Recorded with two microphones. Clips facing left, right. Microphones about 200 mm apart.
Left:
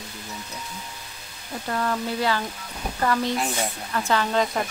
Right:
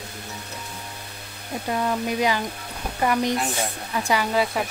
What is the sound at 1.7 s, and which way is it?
Speech, 15° right (ahead or behind).